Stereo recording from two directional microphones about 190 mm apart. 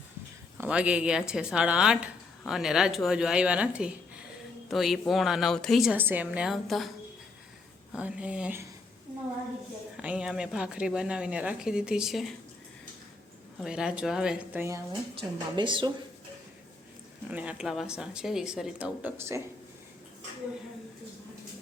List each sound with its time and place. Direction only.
0.6 s a woman's voice: 5° right (ahead or behind)
7.9 s a woman's voice: 5° right (ahead or behind)
10.0 s a woman's voice: 5° right (ahead or behind)
13.6 s a woman's voice: 5° right (ahead or behind)
15.5 s a woman's voice: 25° right (ahead or behind)
17.2 s a woman's voice: 5° right (ahead or behind)